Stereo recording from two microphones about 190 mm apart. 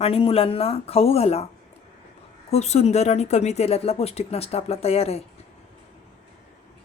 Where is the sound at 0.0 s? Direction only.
30° left (ahead or behind).